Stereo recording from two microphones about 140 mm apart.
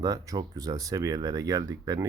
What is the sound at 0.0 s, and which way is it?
Speech, 25° right (ahead or behind).